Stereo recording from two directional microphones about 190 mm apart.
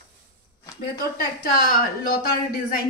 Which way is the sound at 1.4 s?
50° left (ahead or behind).